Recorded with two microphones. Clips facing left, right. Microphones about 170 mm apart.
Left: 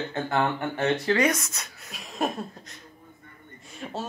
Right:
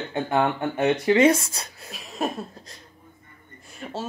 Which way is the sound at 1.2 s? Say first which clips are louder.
Right 7 dB; 30° right (ahead or behind).